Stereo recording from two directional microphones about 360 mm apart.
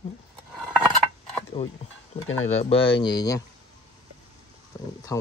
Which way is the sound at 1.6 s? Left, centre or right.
Centre.